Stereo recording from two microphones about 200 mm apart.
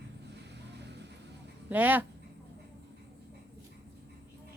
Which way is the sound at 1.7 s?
10° right (ahead or behind).